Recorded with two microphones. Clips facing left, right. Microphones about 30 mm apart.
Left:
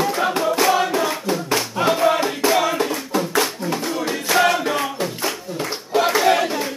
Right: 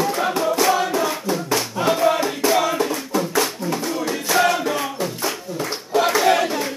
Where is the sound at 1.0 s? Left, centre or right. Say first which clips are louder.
Left 1 dB; left.